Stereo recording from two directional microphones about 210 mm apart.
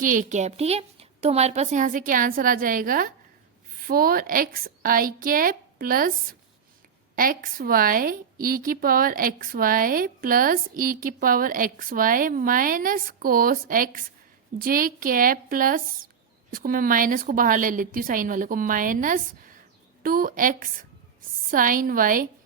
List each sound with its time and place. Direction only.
0.0 s a woman's voice: 40° right (ahead or behind)
7.2 s a woman's voice: 40° right (ahead or behind)